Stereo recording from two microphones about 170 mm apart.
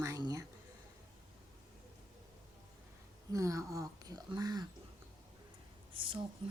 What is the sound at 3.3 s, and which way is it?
Speech, 20° right (ahead or behind).